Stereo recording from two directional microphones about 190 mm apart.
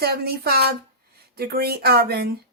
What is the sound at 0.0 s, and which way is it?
Speech, 55° right (ahead or behind).